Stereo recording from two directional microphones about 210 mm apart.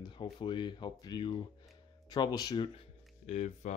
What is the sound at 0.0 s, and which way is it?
Speech, 25° left (ahead or behind).